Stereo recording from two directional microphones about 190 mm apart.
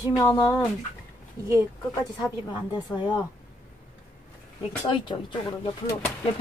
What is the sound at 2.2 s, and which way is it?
Speech, 20° left (ahead or behind).